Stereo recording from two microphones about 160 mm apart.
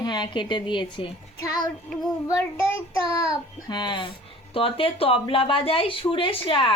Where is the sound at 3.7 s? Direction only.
30° left (ahead or behind).